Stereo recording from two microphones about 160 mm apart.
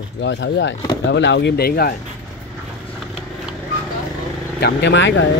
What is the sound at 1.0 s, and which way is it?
Speech, 90° left.